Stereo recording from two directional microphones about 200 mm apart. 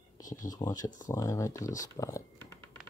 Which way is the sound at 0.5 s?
15° left (ahead or behind).